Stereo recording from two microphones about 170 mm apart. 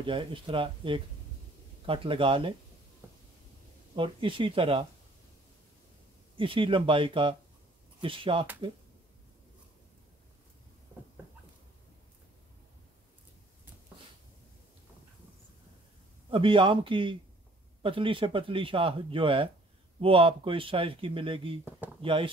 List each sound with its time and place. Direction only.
0.0 s speech: 30° right (ahead or behind)
3.9 s speech: 30° right (ahead or behind)
6.3 s speech: 30° right (ahead or behind)
16.3 s speech: 30° right (ahead or behind)